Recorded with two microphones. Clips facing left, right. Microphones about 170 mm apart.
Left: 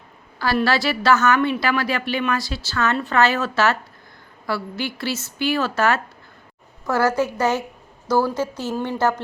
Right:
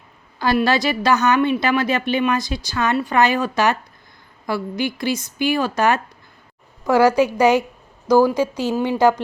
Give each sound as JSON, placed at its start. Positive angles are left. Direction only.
{"t": 0.3, "sound": "a woman's voice", "side_deg": -20}